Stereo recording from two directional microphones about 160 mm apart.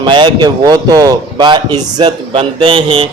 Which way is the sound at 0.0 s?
30° right (ahead or behind).